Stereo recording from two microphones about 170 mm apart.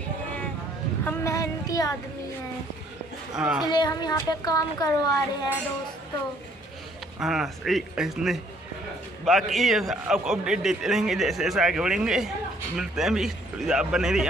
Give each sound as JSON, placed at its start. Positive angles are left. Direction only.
{"t": 1.0, "sound": "child singing", "side_deg": 20}
{"t": 3.6, "sound": "a woman's voice", "side_deg": 25}
{"t": 7.2, "sound": "a man's voice", "side_deg": 0}